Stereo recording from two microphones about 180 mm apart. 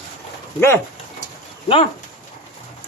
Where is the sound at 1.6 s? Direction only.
30° left (ahead or behind).